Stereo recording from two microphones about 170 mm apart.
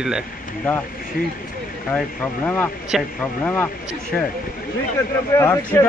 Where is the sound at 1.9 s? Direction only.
10° left (ahead or behind).